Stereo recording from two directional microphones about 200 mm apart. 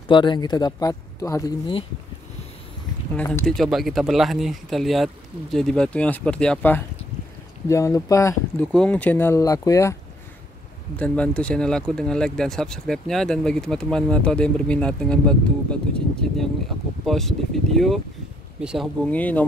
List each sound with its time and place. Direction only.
0.1 s speech: 25° left (ahead or behind)
3.2 s speech: 10° left (ahead or behind)
11.0 s speech: 5° left (ahead or behind)
19.0 s speech: 10° left (ahead or behind)